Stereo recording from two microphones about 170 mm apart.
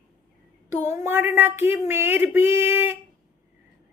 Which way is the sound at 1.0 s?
15° right (ahead or behind).